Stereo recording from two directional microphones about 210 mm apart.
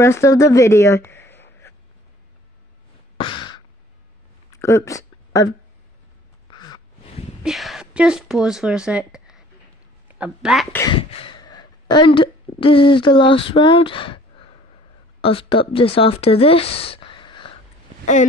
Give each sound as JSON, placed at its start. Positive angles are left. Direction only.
{"t": 0.0, "sound": "speech", "side_deg": 15}
{"t": 1.3, "sound": "a sound", "side_deg": 10}
{"t": 3.2, "sound": "sigh", "side_deg": 25}
{"t": 4.6, "sound": "a sound", "side_deg": 15}
{"t": 6.5, "sound": "crow", "side_deg": 20}
{"t": 7.4, "sound": "speech", "side_deg": 0}
{"t": 10.8, "sound": "speech", "side_deg": 25}
{"t": 15.2, "sound": "speech", "side_deg": 25}